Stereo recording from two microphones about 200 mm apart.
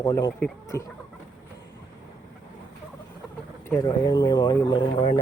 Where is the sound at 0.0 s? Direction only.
15° left (ahead or behind).